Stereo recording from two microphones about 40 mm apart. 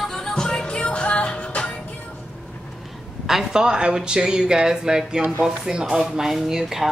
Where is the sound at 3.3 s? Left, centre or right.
Centre.